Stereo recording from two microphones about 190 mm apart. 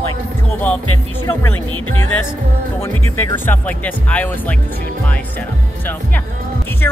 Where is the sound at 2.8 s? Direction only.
15° left (ahead or behind).